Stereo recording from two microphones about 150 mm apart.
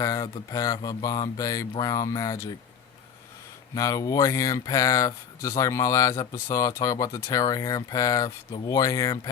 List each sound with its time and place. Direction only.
0.0 s speech: 20° left (ahead or behind)
3.8 s speech: 25° left (ahead or behind)